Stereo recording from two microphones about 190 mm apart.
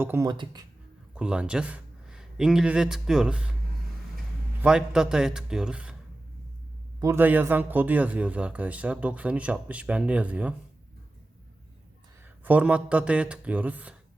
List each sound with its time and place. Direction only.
0.0 s speech: 10° right (ahead or behind)
0.3 s speech: 25° right (ahead or behind)
1.1 s speech: 5° right (ahead or behind)
4.6 s speech: 5° right (ahead or behind)
7.0 s speech: 10° right (ahead or behind)
12.2 s speech: 10° right (ahead or behind)